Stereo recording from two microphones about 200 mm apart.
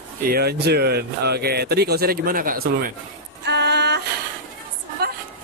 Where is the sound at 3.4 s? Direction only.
55° right (ahead or behind).